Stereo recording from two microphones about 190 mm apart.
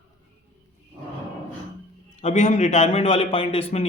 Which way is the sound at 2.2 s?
40° left (ahead or behind).